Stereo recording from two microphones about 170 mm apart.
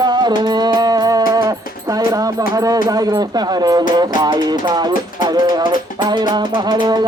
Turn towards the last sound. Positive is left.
turn(degrees=-25)  # may be behind; listen again after turning